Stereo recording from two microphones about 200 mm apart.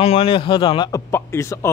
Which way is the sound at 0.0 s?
30° left (ahead or behind).